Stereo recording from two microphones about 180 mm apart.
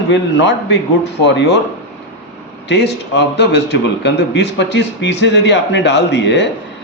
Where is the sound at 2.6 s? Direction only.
70° left (ahead or behind).